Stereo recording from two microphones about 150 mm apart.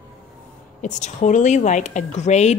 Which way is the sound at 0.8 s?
55° left (ahead or behind).